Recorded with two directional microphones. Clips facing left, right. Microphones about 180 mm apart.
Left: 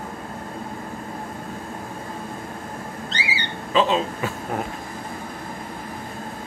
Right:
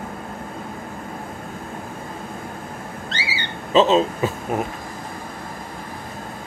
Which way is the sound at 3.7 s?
25° right (ahead or behind).